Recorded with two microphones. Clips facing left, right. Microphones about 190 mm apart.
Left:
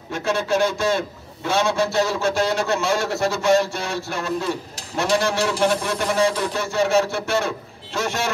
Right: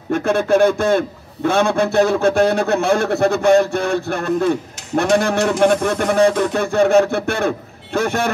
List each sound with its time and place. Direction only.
0.1 s a man's voice: 55° right (ahead or behind)